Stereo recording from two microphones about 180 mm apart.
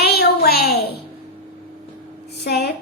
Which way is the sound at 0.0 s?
60° left (ahead or behind).